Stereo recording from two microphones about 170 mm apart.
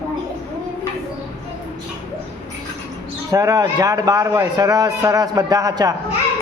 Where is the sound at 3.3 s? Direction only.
20° right (ahead or behind).